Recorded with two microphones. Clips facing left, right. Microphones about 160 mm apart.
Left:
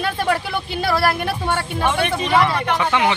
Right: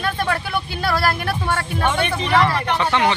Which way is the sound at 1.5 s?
10° left (ahead or behind).